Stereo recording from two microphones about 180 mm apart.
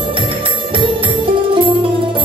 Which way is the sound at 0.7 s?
30° right (ahead or behind).